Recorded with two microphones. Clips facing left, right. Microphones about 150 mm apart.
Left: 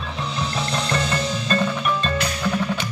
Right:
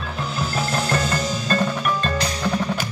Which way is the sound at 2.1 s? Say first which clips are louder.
Even; 35° right (ahead or behind).